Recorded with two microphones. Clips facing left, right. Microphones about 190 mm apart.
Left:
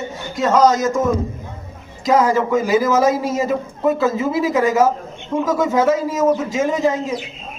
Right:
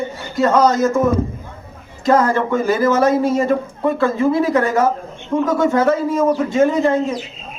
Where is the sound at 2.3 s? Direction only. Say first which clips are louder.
Left 1 dB; 5° left (ahead or behind).